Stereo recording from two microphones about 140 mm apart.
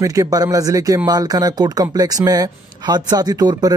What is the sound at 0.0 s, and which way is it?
Speech, 25° right (ahead or behind).